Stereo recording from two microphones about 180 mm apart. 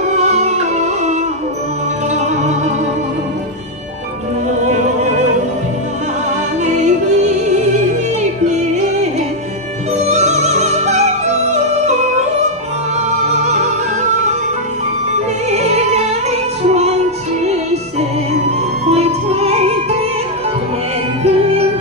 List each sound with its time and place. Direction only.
0.2 s music: 40° right (ahead or behind)
2.1 s music: 40° right (ahead or behind)
6.6 s music: 40° right (ahead or behind)
9.9 s music: 40° right (ahead or behind)
15.5 s music: 40° right (ahead or behind)
18.9 s music: 35° right (ahead or behind)